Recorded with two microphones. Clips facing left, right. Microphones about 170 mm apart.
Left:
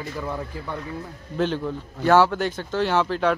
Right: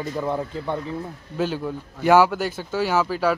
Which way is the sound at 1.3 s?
5° right (ahead or behind).